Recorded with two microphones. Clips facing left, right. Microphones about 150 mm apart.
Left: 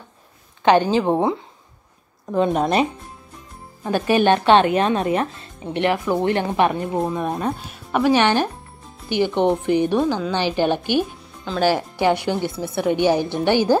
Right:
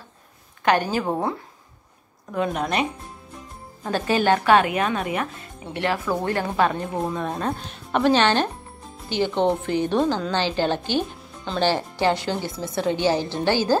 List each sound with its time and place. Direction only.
0.7 s speech: 25° left (ahead or behind)
3.8 s a woman's voice: 15° left (ahead or behind)
11.4 s speech: centre (ahead or behind)
11.7 s a woman's voice: 15° left (ahead or behind)